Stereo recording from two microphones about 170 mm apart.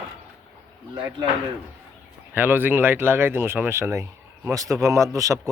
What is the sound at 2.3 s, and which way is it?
A man's voice, 10° right (ahead or behind).